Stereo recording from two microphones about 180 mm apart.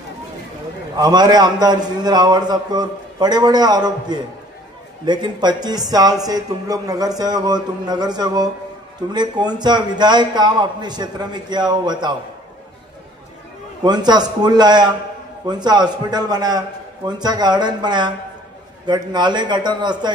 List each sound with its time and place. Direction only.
0.9 s a man's voice: 20° right (ahead or behind)
13.8 s a man's voice: 25° right (ahead or behind)